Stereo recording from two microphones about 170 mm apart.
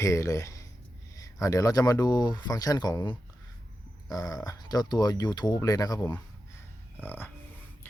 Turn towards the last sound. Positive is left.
turn(degrees=15)  # may be behind; listen again after turning